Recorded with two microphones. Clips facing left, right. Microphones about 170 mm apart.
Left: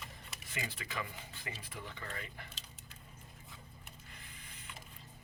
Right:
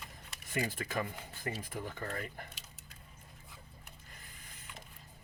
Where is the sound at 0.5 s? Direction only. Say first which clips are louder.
Right 7 dB; 45° right (ahead or behind).